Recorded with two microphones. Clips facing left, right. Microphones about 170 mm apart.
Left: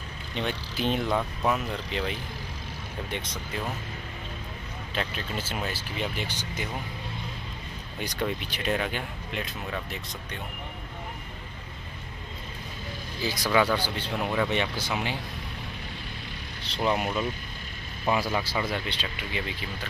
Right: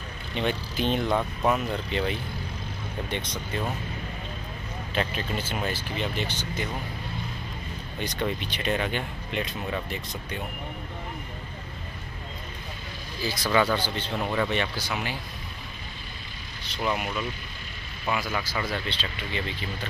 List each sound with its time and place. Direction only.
0.4 s speech: 5° right (ahead or behind)
4.9 s speech: centre (ahead or behind)
8.0 s speech: 5° left (ahead or behind)
13.2 s speech: 15° left (ahead or behind)
14.5 s speech: 20° left (ahead or behind)
16.6 s speech: 30° left (ahead or behind); by 19.5 s 10° left (ahead or behind)